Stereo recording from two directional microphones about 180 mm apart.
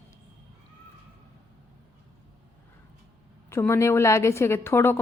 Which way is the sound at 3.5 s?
15° left (ahead or behind).